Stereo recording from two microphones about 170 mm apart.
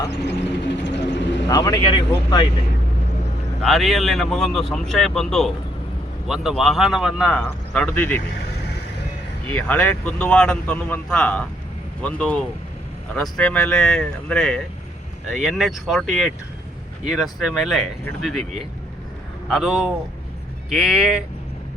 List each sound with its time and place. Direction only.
0.9 s vehicle: 90° left
1.5 s speech: 20° left (ahead or behind)
3.6 s a man's voice: centre (ahead or behind)
9.5 s a man's voice: 10° left (ahead or behind)
19.5 s a man's voice: centre (ahead or behind)